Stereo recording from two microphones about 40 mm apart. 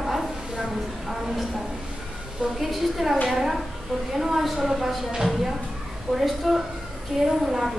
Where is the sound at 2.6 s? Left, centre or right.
Centre.